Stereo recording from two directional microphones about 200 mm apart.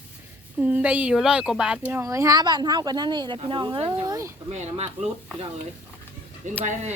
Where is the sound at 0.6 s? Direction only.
5° right (ahead or behind).